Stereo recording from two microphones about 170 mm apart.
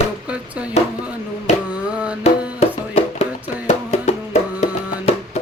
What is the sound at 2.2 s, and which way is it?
Music, 40° left (ahead or behind).